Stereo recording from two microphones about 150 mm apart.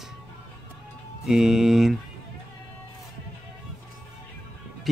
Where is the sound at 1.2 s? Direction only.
5° right (ahead or behind).